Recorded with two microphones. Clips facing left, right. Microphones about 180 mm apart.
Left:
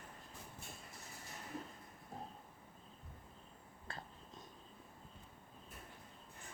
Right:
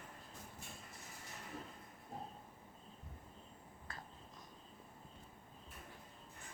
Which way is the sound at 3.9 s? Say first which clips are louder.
Left 3 dB; 30° left (ahead or behind).